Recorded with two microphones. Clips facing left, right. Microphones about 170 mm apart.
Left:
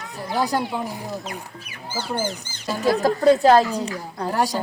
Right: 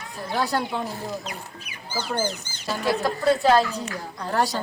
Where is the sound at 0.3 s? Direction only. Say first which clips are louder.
Left 2 dB; 15° left (ahead or behind).